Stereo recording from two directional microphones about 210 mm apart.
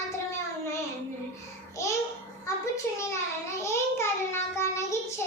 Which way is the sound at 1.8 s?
15° left (ahead or behind).